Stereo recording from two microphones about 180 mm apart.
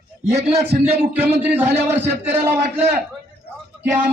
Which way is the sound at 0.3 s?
35° right (ahead or behind).